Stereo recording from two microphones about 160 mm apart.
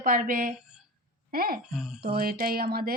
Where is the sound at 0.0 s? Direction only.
60° right (ahead or behind).